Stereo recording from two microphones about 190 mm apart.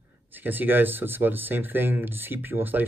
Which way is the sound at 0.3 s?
10° right (ahead or behind).